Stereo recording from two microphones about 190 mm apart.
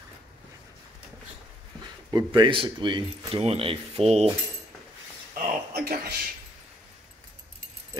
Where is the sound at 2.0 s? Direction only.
20° right (ahead or behind).